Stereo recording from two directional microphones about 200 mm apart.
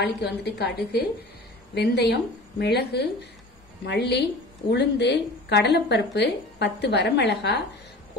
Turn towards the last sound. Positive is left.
turn(degrees=55)  # may be behind; listen again after turning